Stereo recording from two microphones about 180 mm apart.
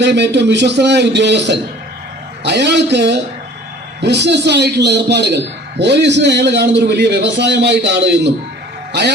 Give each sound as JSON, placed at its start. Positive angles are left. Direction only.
{"t": 0.0, "sound": "a man's voice", "side_deg": -70}